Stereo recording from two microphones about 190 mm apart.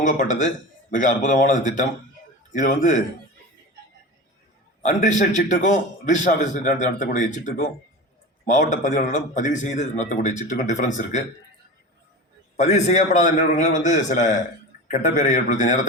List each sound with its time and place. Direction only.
0.0 s a man's voice: 40° left (ahead or behind)
4.8 s a man's voice: 40° left (ahead or behind)
12.5 s a man's voice: 35° left (ahead or behind)